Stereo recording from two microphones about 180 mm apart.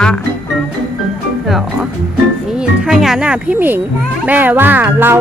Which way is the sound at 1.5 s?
Centre (ahead or behind).